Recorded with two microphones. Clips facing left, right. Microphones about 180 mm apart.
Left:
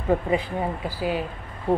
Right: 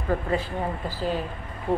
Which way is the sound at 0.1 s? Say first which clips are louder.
Left 3 dB; 15° left (ahead or behind).